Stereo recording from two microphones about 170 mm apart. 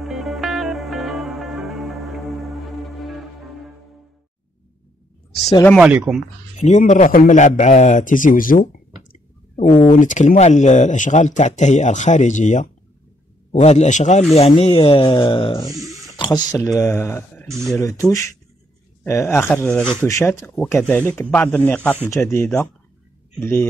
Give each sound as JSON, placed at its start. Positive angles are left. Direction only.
{"t": 0.0, "sound": "music", "side_deg": 0}
{"t": 5.8, "sound": "speech", "side_deg": -5}
{"t": 6.6, "sound": "speech", "side_deg": 45}
{"t": 15.6, "sound": "a sound", "side_deg": 0}
{"t": 16.2, "sound": "speech", "side_deg": 25}